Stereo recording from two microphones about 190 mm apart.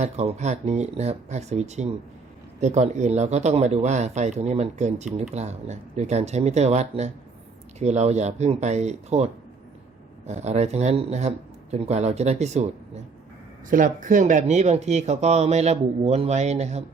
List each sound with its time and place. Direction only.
0.0 s speech: 35° right (ahead or behind)